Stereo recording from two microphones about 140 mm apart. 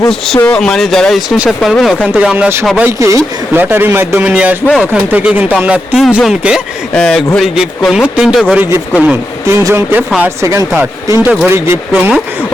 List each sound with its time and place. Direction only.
0.4 s speech: 5° left (ahead or behind)
2.1 s speech: 10° right (ahead or behind)
6.9 s speech: 5° left (ahead or behind)
9.0 s speech: 15° right (ahead or behind)